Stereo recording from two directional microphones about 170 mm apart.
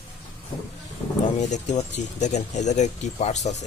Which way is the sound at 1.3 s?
45° left (ahead or behind).